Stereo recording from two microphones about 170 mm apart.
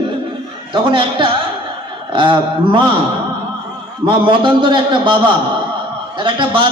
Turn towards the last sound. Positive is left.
turn(degrees=-30)  # may be behind; listen again after turning